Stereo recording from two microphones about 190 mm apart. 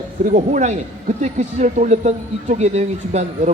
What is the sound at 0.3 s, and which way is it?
Speech, 40° right (ahead or behind).